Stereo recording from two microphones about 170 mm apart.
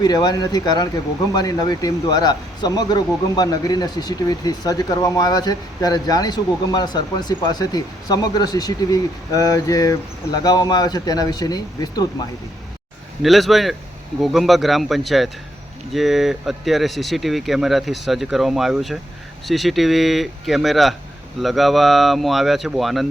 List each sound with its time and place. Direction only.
0.0 s speech: 25° left (ahead or behind)
13.2 s speech: centre (ahead or behind)